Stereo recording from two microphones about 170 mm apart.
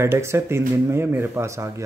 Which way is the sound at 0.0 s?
15° right (ahead or behind).